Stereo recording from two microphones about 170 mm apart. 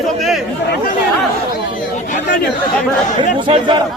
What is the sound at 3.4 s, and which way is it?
Speech, 30° right (ahead or behind).